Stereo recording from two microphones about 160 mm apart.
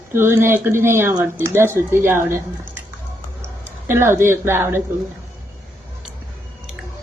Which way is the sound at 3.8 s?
15° right (ahead or behind).